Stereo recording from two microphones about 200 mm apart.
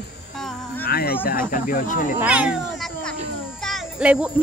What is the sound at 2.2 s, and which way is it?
Cat, 5° right (ahead or behind).